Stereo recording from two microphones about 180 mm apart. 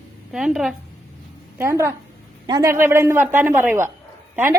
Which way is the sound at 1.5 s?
15° right (ahead or behind).